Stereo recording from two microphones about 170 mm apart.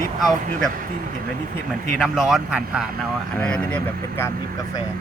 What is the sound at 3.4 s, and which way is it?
Speech, 10° left (ahead or behind).